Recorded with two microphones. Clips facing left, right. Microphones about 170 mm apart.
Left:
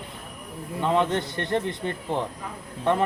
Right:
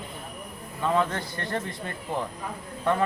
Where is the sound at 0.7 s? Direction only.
20° left (ahead or behind).